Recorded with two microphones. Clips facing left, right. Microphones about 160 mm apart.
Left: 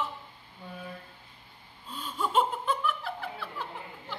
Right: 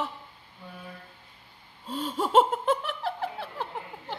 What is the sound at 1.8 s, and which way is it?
Laughter, 90° right.